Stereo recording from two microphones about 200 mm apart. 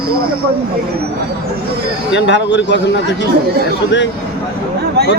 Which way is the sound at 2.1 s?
60° left (ahead or behind).